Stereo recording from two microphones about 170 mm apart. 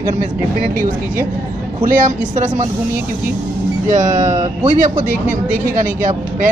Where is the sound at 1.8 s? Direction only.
50° right (ahead or behind).